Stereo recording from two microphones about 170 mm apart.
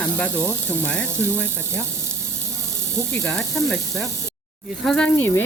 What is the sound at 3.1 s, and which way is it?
Speech, 10° left (ahead or behind).